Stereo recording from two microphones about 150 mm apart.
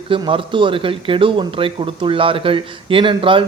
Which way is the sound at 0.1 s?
35° right (ahead or behind).